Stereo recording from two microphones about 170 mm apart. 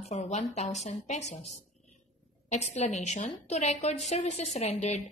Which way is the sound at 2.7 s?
45° left (ahead or behind).